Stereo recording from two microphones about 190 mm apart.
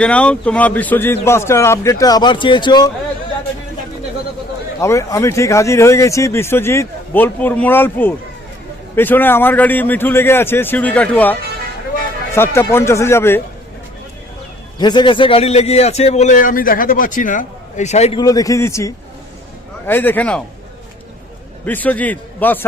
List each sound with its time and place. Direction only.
0.0 s speech: 5° left (ahead or behind); by 2.9 s 20° left (ahead or behind)
4.8 s speech: 15° left (ahead or behind)
14.8 s a man's voice: 25° left (ahead or behind)
18.2 s speech: 20° left (ahead or behind)
21.6 s a man's voice: 10° left (ahead or behind)